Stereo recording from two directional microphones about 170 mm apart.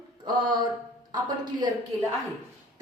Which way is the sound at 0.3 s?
25° right (ahead or behind).